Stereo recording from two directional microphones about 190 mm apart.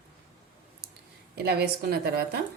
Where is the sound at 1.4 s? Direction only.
55° right (ahead or behind).